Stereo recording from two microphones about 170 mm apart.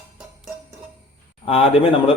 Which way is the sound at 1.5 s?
35° left (ahead or behind).